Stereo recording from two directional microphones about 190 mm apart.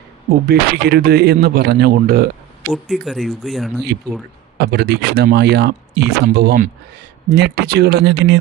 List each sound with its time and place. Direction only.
0.3 s speech: 55° right (ahead or behind)
2.6 s speech: centre (ahead or behind)
4.5 s speech: 60° right (ahead or behind)